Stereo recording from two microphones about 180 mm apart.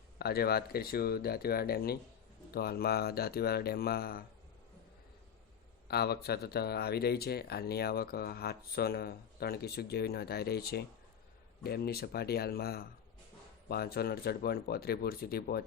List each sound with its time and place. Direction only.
0.2 s speech: 60° left (ahead or behind)
5.9 s speech: 60° left (ahead or behind)